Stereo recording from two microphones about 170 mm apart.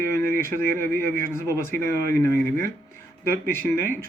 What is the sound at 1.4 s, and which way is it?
Speech, 15° left (ahead or behind).